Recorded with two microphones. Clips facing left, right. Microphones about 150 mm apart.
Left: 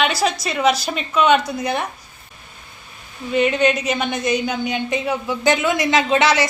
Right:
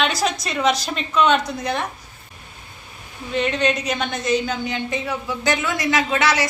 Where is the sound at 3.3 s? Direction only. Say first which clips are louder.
Left 4 dB; 10° left (ahead or behind).